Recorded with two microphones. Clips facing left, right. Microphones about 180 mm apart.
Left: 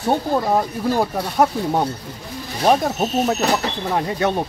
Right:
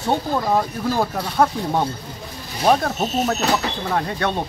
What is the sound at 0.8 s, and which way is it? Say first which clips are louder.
Speech: left 2 dB; 15° left (ahead or behind).